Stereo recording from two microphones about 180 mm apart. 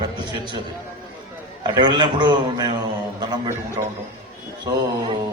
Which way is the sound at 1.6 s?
25° right (ahead or behind).